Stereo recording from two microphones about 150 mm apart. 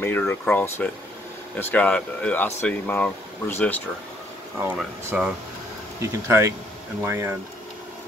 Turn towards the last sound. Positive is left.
turn(degrees=-15)  # may be behind; listen again after turning